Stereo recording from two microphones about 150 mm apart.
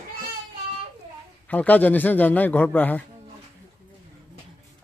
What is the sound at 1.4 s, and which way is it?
A man's voice, 10° left (ahead or behind).